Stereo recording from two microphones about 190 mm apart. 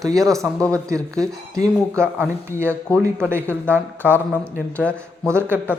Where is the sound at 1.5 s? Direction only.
15° right (ahead or behind).